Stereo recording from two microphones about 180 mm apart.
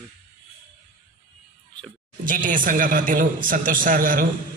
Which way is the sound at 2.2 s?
50° right (ahead or behind).